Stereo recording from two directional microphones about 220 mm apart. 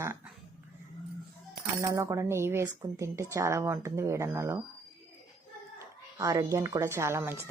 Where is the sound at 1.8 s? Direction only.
15° right (ahead or behind).